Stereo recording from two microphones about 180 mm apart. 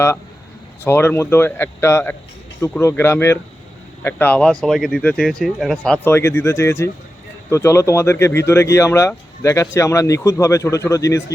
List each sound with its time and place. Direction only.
0.9 s speech: 15° left (ahead or behind)